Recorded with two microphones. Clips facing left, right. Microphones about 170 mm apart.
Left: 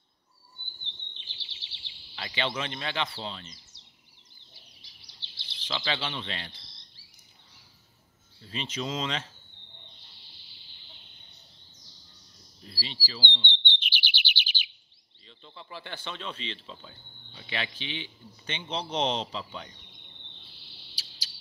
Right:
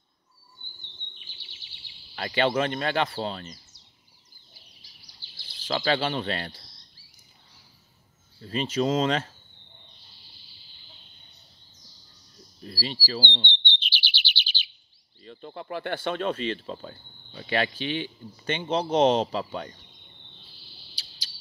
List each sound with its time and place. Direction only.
1.1 s bird vocalization: 25° left (ahead or behind)
2.1 s speech: 50° right (ahead or behind)
5.0 s bird vocalization: 25° left (ahead or behind)
5.7 s speech: 50° right (ahead or behind)
8.4 s speech: 45° right (ahead or behind)
12.6 s speech: 45° right (ahead or behind)
13.7 s chirp: 15° left (ahead or behind)
15.2 s speech: 55° right (ahead or behind)
20.9 s cricket: 5° left (ahead or behind)